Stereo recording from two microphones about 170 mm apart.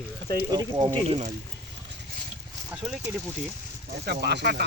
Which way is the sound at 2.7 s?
5° right (ahead or behind).